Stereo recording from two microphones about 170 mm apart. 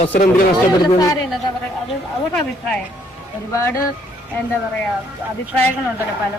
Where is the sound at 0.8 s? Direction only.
20° left (ahead or behind).